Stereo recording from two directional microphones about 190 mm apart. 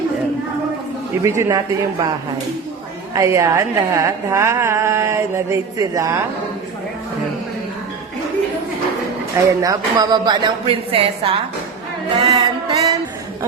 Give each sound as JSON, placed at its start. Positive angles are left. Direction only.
{"t": 1.2, "sound": "a woman's voice", "side_deg": -15}
{"t": 3.2, "sound": "a woman's voice", "side_deg": -15}
{"t": 9.6, "sound": "speech", "side_deg": -20}